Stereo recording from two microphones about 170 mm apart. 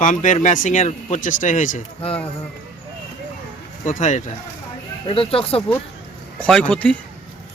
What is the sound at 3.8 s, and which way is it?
Speech, 45° left (ahead or behind).